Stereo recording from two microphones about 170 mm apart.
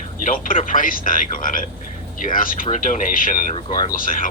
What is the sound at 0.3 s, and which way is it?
Speech, 55° left (ahead or behind).